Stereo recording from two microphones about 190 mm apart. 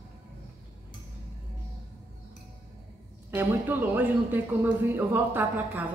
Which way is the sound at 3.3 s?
10° right (ahead or behind).